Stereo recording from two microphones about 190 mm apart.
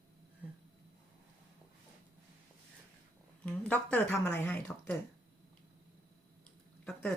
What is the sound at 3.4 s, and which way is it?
Speech, 5° left (ahead or behind).